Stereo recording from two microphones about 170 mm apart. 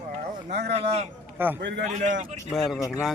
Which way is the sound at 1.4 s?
15° right (ahead or behind).